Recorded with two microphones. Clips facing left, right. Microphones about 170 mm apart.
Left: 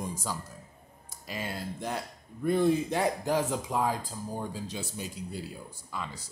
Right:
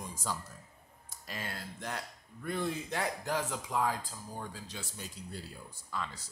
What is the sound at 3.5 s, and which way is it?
Speech, 25° left (ahead or behind).